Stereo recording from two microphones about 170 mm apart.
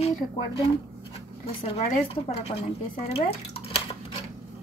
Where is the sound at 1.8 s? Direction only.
40° left (ahead or behind).